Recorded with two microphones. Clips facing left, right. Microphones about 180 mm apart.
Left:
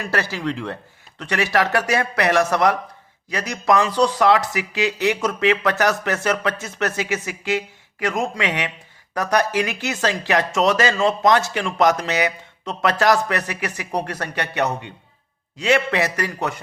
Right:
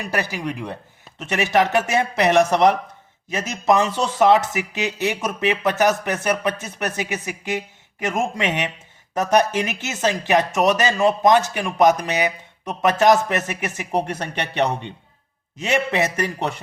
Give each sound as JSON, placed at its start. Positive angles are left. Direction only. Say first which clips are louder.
{"t": 0.0, "sound": "speech", "louder": "left 1 dB", "side_deg": -15}